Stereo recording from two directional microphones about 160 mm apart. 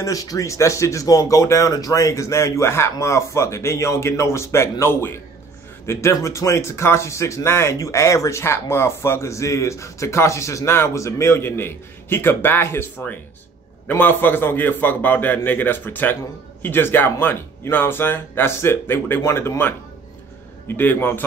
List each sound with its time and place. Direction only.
0.0 s speech: 20° left (ahead or behind)